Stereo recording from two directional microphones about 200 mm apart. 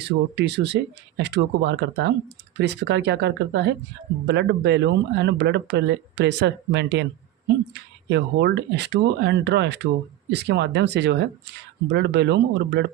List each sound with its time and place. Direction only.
0.0 s speech: 55° right (ahead or behind)